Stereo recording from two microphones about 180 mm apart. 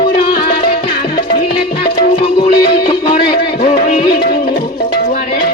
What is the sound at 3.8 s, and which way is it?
Music, 55° left (ahead or behind).